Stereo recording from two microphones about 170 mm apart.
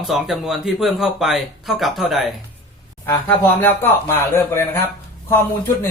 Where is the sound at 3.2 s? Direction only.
10° left (ahead or behind).